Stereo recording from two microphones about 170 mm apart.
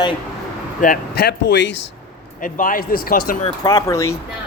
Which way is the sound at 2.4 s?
55° left (ahead or behind).